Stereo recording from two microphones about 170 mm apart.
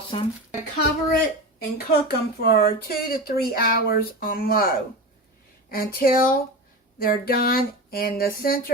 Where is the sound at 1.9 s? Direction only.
65° left (ahead or behind).